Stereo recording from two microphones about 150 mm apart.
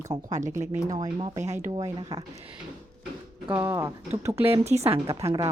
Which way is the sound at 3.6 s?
20° right (ahead or behind).